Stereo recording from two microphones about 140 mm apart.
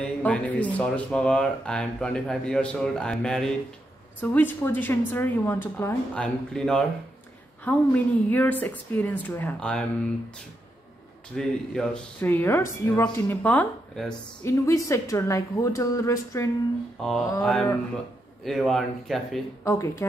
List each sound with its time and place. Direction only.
0.0 s a woman's voice: 10° left (ahead or behind)
11.3 s speech: 5° left (ahead or behind)
12.2 s a woman's voice: 15° left (ahead or behind)
14.4 s a woman's voice: 20° left (ahead or behind)
17.0 s speech: 5° left (ahead or behind)
19.6 s a woman's voice: 20° left (ahead or behind)